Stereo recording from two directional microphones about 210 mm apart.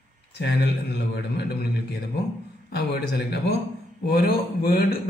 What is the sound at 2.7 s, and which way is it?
Speech, 50° left (ahead or behind).